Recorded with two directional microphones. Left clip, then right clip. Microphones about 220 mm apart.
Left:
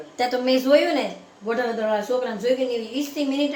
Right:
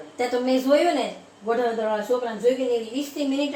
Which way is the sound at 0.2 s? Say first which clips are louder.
Left 2 dB; 5° left (ahead or behind).